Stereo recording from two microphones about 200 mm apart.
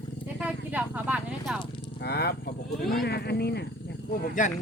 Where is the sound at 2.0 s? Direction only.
55° left (ahead or behind).